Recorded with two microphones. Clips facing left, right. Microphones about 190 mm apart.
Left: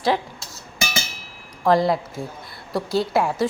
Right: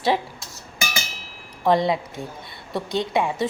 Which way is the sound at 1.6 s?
Centre (ahead or behind).